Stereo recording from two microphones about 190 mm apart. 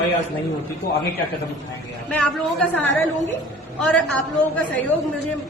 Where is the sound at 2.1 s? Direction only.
5° left (ahead or behind).